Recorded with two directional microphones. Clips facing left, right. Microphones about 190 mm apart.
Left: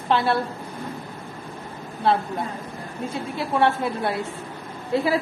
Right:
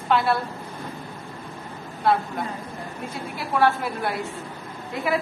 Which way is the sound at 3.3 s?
25° left (ahead or behind).